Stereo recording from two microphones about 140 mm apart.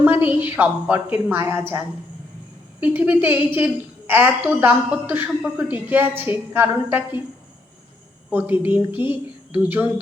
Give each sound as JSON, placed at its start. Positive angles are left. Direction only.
{"t": 0.0, "sound": "a woman's voice", "side_deg": -10}
{"t": 2.8, "sound": "a woman's voice", "side_deg": -15}
{"t": 8.3, "sound": "a woman's voice", "side_deg": -15}